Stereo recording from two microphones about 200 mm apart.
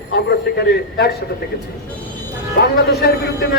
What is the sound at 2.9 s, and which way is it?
Speech, 55° left (ahead or behind).